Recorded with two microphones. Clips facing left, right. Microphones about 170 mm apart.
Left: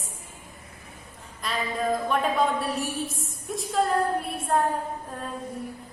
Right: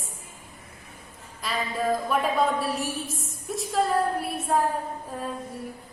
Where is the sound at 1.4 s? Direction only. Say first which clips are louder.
Right 1 dB; 5° right (ahead or behind).